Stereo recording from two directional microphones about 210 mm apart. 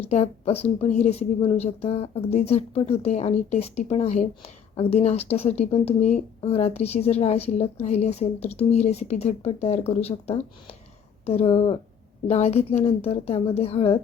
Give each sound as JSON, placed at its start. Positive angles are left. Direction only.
{"t": 0.0, "sound": "a woman's voice", "side_deg": 30}